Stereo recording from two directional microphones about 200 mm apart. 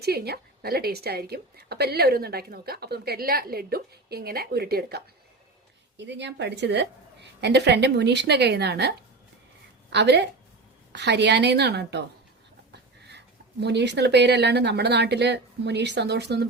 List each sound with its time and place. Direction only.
0.0 s a woman's voice: 50° right (ahead or behind)
9.9 s a woman's voice: 60° right (ahead or behind)